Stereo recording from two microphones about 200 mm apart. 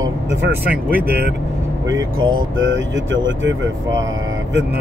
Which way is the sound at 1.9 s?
20° right (ahead or behind).